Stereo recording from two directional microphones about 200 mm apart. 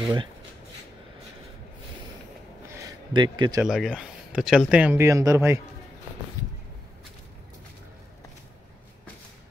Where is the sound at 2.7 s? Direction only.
20° right (ahead or behind).